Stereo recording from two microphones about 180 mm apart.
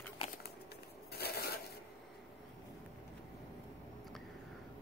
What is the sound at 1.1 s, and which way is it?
Crushing, 60° left (ahead or behind).